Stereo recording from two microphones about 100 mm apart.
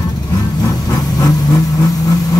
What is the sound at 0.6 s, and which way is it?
Vehicle, 35° left (ahead or behind).